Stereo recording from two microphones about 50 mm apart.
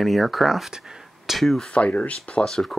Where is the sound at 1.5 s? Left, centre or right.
Left.